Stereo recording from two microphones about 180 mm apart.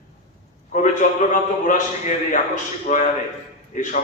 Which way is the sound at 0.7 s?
40° left (ahead or behind).